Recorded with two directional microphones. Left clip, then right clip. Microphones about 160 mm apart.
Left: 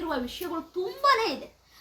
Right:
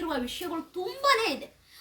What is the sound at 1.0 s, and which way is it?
Speech, 15° right (ahead or behind).